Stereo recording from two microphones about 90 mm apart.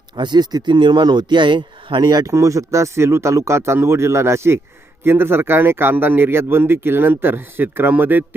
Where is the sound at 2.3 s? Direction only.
35° right (ahead or behind).